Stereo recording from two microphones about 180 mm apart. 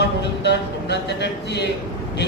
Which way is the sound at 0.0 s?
70° left (ahead or behind).